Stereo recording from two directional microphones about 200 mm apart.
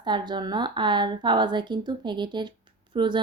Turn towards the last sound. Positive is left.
turn(degrees=-25)  # may be behind; listen again after turning